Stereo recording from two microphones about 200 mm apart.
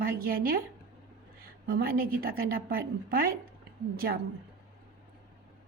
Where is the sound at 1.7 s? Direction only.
45° right (ahead or behind).